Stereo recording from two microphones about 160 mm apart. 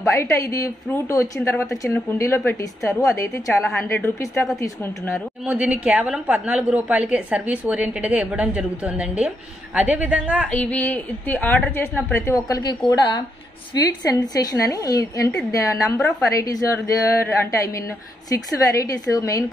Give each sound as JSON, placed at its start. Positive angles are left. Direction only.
{"t": 0.2, "sound": "a woman's voice", "side_deg": 20}
{"t": 5.4, "sound": "a woman's voice", "side_deg": -10}
{"t": 10.5, "sound": "a woman's voice", "side_deg": 10}
{"t": 18.3, "sound": "a woman's voice", "side_deg": 20}